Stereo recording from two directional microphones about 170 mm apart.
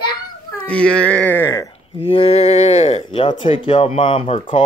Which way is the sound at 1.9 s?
35° left (ahead or behind).